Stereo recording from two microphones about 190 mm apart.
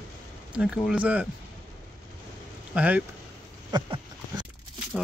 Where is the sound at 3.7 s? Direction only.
20° right (ahead or behind).